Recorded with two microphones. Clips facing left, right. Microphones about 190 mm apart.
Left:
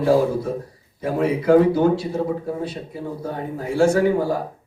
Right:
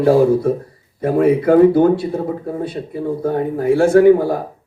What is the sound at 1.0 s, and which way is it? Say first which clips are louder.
Speech: right 5 dB; 55° right (ahead or behind).